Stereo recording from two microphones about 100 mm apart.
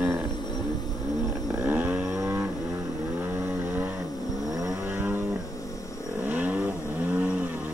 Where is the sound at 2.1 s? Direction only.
25° right (ahead or behind).